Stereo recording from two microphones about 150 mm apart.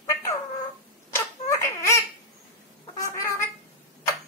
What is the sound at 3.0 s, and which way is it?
Fowl, 20° left (ahead or behind).